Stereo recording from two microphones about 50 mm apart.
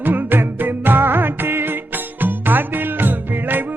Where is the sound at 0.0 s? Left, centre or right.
Right.